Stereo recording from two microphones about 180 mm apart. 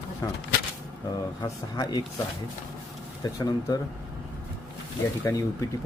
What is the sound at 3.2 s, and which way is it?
Speech, 20° left (ahead or behind).